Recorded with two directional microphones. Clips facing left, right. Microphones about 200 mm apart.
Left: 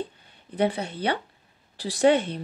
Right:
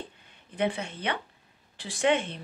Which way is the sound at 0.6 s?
35° left (ahead or behind).